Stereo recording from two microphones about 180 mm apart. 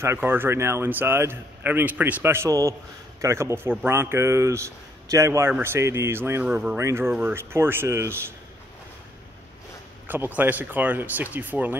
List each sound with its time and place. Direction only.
0.0 s speech: 15° right (ahead or behind)
10.0 s speech: 10° right (ahead or behind)